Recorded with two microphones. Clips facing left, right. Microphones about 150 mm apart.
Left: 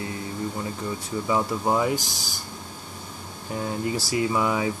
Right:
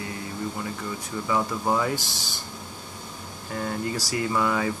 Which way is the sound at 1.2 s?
20° left (ahead or behind).